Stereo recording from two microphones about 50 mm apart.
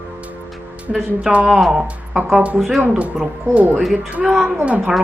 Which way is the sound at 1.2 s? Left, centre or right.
Centre.